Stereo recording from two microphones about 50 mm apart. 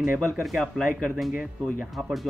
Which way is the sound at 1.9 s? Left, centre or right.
Centre.